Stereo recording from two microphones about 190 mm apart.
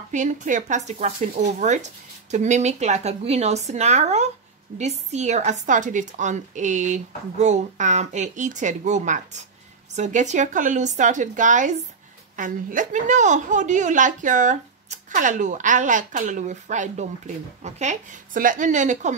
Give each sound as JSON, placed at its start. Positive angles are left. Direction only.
{"t": 0.1, "sound": "a woman's voice", "side_deg": -40}